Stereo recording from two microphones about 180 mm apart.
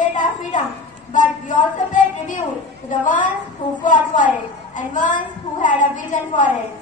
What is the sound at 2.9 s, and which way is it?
A woman's voice, 45° left (ahead or behind).